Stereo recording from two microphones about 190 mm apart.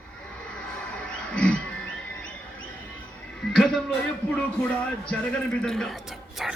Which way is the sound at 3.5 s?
Centre (ahead or behind).